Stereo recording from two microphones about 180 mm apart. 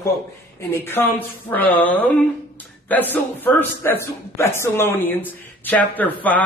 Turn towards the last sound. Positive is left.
turn(degrees=10)  # may be behind; listen again after turning